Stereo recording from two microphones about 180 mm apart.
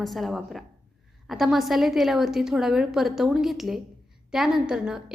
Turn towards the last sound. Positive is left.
turn(degrees=-5)  # may be behind; listen again after turning